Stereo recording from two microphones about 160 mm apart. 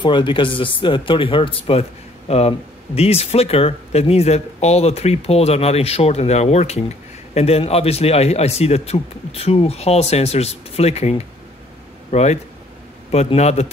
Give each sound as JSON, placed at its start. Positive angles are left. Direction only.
{"t": 0.0, "sound": "a man's voice", "side_deg": 30}